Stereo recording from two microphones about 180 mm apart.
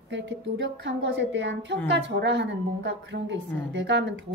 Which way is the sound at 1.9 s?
80° right.